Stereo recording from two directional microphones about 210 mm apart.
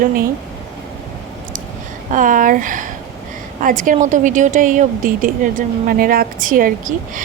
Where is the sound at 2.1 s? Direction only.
40° right (ahead or behind).